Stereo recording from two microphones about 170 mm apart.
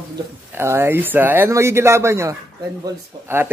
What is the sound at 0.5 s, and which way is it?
Speech, 15° right (ahead or behind).